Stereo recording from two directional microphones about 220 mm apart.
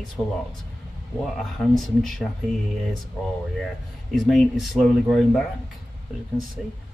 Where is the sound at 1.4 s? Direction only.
Centre (ahead or behind).